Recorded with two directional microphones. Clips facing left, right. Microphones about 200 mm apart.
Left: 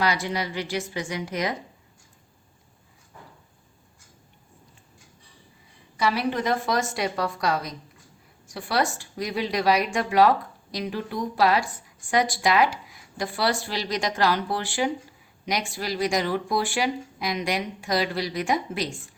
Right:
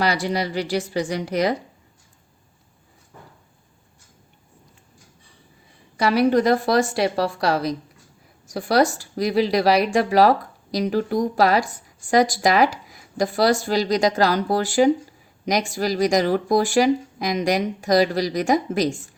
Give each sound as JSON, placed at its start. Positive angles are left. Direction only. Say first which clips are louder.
{"t": 0.0, "sound": "a woman's voice", "louder": "right 4 dB", "side_deg": -35}
{"t": 6.0, "sound": "a woman's voice", "louder": "right 8 dB", "side_deg": -40}